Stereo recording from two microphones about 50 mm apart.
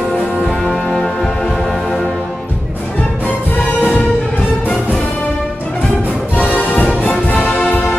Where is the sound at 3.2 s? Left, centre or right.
Left.